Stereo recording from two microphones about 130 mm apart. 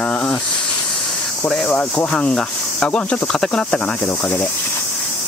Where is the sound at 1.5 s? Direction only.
5° left (ahead or behind).